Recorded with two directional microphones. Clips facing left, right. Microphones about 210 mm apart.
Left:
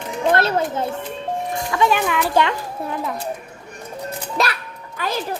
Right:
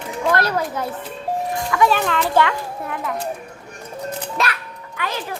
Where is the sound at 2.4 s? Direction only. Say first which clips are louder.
Even; 30° left (ahead or behind).